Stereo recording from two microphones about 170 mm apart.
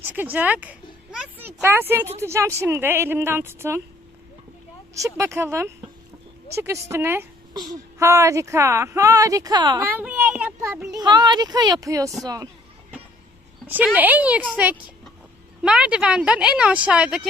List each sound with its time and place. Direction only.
0.0 s a woman's voice: 10° right (ahead or behind)
4.9 s speech: 20° right (ahead or behind)
7.5 s speech: 25° right (ahead or behind)
10.0 s speech: 10° right (ahead or behind)
13.7 s speech: 10° right (ahead or behind)